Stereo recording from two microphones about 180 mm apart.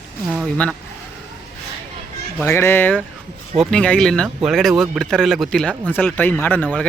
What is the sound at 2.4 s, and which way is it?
Speech, 15° left (ahead or behind).